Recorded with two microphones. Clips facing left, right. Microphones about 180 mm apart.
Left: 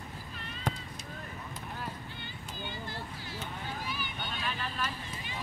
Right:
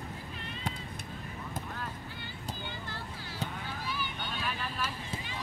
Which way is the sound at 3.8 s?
15° left (ahead or behind).